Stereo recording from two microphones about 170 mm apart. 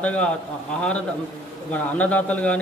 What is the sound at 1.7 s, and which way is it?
Speech, 10° left (ahead or behind).